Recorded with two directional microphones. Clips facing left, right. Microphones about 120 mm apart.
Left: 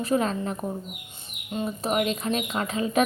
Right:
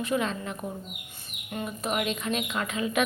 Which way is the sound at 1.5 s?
30° left (ahead or behind).